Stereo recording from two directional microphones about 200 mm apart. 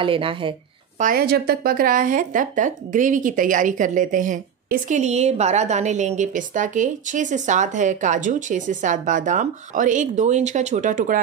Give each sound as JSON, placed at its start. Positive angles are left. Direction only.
{"t": 0.0, "sound": "speech", "side_deg": -25}
{"t": 0.9, "sound": "speech", "side_deg": -45}